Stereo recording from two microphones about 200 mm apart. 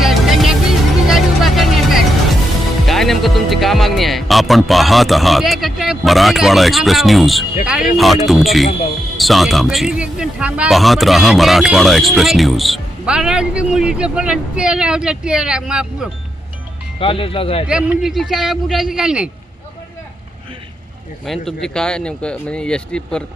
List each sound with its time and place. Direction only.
0.0 s music: centre (ahead or behind)
1.0 s vehicle: centre (ahead or behind)
2.8 s speech: centre (ahead or behind)
17.0 s speech: 25° left (ahead or behind)
17.7 s speech: 5° right (ahead or behind)
21.2 s speech: centre (ahead or behind)